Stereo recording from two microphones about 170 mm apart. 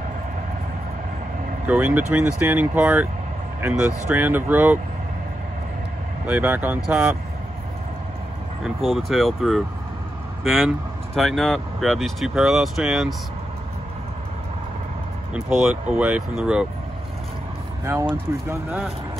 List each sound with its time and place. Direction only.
1.7 s speech: 10° right (ahead or behind)
6.2 s speech: 10° right (ahead or behind)
8.6 s speech: centre (ahead or behind)
15.3 s speech: 5° right (ahead or behind)
17.9 s speech: 15° right (ahead or behind)